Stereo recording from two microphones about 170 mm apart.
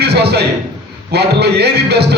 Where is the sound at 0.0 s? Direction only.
70° right (ahead or behind).